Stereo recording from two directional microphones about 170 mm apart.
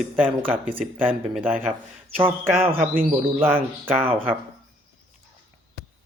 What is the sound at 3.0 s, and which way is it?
Speech, 10° right (ahead or behind).